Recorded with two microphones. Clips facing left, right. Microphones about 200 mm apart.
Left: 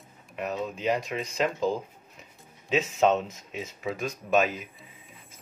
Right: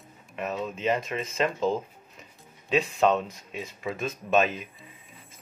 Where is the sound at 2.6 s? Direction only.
20° left (ahead or behind).